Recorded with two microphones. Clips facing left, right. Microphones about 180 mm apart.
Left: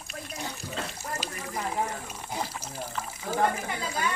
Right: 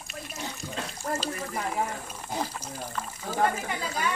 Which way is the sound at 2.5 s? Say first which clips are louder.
Even; 10° left (ahead or behind).